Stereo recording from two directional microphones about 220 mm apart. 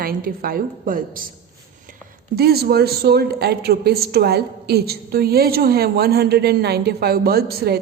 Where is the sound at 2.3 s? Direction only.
45° right (ahead or behind).